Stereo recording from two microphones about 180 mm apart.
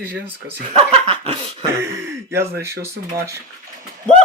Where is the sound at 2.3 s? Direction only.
15° right (ahead or behind).